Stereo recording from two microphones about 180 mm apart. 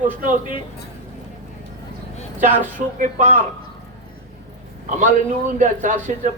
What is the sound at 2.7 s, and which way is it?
Speech, 45° right (ahead or behind).